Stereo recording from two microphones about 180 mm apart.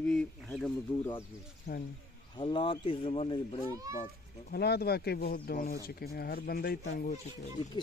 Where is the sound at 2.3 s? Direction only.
25° left (ahead or behind).